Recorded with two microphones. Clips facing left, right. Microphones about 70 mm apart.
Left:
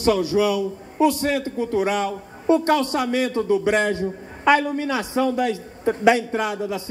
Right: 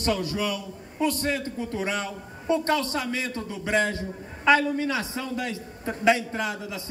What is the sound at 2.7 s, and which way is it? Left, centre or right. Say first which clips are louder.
Speech: left 6 dB; left.